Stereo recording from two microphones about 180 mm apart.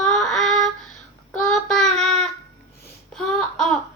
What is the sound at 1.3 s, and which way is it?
Child singing, 5° left (ahead or behind).